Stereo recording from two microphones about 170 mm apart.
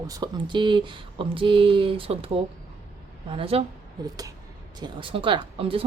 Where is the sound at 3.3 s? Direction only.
35° right (ahead or behind).